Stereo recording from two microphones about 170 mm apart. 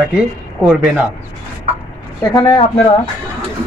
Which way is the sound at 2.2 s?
30° left (ahead or behind).